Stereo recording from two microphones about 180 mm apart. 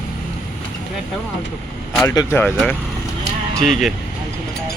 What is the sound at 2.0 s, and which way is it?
Speech, 15° left (ahead or behind).